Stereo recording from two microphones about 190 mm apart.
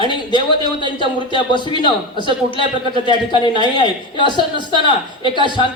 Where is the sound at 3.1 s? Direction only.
25° left (ahead or behind).